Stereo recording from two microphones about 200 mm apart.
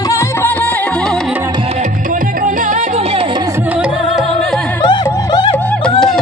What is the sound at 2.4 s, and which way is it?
Music, 40° right (ahead or behind).